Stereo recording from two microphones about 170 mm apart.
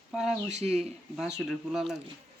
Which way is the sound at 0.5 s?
40° right (ahead or behind).